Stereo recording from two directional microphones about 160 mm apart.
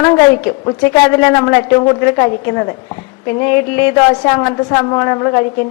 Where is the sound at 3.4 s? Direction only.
15° left (ahead or behind).